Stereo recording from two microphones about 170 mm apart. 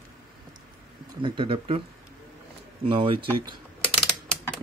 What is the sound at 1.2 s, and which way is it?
Speech, 30° right (ahead or behind).